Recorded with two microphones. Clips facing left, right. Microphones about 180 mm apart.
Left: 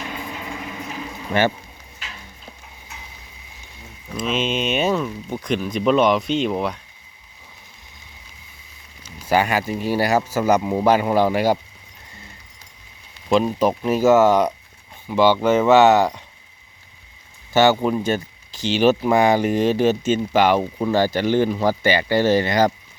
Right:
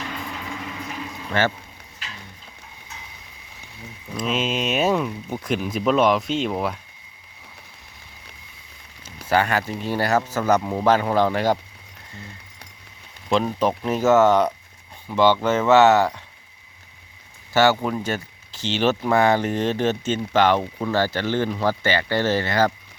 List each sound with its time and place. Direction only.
1.3 s speech: 15° left (ahead or behind)
4.2 s speech: centre (ahead or behind)
9.3 s speech: 10° left (ahead or behind)
13.3 s speech: 10° left (ahead or behind)
17.5 s speech: 20° left (ahead or behind)